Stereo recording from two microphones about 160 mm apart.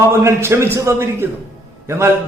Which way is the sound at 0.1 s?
15° right (ahead or behind).